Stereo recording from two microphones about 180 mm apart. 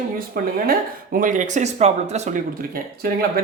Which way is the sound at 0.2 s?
55° right (ahead or behind).